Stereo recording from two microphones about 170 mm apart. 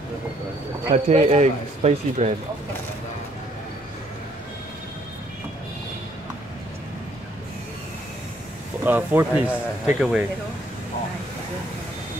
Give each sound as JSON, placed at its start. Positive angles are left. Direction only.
{"t": 0.9, "sound": "a man's voice", "side_deg": -40}
{"t": 8.8, "sound": "speech", "side_deg": -10}